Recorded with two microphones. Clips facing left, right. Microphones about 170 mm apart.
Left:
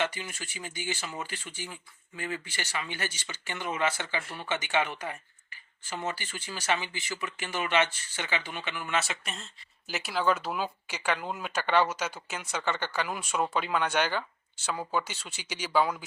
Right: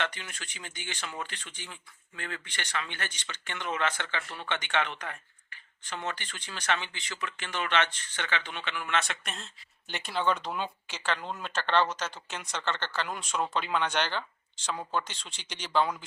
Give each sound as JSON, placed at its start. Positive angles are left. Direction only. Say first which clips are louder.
{"t": 0.0, "sound": "speech", "louder": "left 3 dB", "side_deg": 10}